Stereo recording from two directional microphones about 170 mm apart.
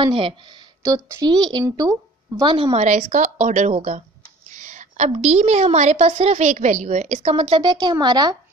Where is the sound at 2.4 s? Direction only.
30° right (ahead or behind).